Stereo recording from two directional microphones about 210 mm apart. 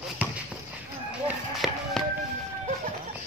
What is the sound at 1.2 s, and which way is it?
Run, centre (ahead or behind).